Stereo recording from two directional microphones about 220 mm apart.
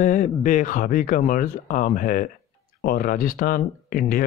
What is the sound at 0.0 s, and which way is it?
Speech, 35° left (ahead or behind).